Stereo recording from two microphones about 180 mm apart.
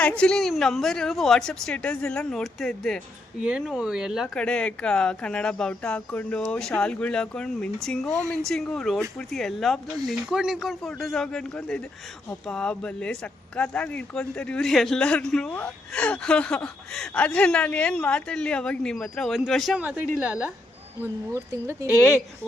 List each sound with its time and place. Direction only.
0.0 s speech: 5° left (ahead or behind); by 21.8 s 15° right (ahead or behind)